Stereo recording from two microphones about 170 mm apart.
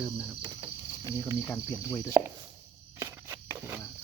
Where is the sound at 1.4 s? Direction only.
10° left (ahead or behind).